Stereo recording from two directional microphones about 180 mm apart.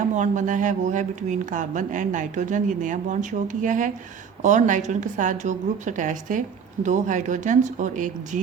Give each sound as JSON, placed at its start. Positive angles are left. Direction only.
{"t": 0.0, "sound": "a woman's voice", "side_deg": -45}